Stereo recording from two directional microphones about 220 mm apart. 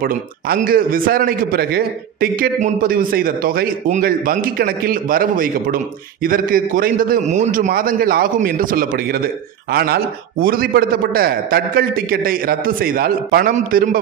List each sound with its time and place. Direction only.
0.0 s a man's voice: 40° right (ahead or behind)